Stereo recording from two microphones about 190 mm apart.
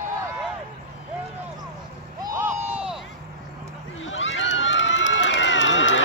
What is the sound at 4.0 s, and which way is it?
Run, 85° left.